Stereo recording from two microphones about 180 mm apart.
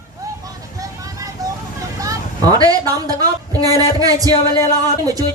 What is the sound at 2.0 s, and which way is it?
Speech, 20° right (ahead or behind).